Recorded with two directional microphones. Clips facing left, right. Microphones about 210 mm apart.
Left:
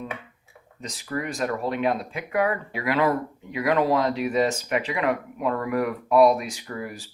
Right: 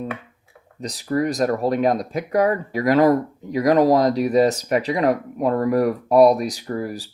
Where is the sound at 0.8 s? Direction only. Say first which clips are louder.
Right 9 dB; 35° right (ahead or behind).